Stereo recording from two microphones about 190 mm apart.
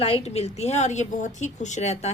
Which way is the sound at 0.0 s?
30° left (ahead or behind).